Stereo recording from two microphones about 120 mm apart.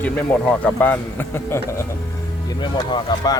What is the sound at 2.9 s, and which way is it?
Speech, 30° left (ahead or behind).